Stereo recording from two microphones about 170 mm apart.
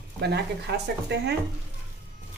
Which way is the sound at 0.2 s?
75° right (ahead or behind).